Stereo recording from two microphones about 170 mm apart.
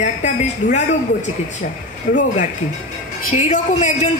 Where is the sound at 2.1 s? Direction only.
50° left (ahead or behind).